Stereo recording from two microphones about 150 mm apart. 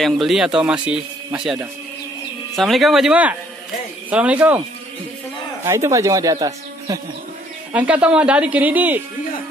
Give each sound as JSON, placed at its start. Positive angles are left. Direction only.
{"t": 0.0, "sound": "speech", "side_deg": 0}
{"t": 5.7, "sound": "speech", "side_deg": -20}
{"t": 7.7, "sound": "speech", "side_deg": -10}